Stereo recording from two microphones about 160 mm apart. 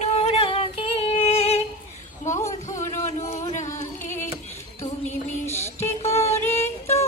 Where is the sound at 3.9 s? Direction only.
15° left (ahead or behind).